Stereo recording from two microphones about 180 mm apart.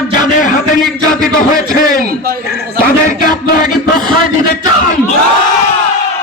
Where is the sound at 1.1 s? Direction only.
50° left (ahead or behind).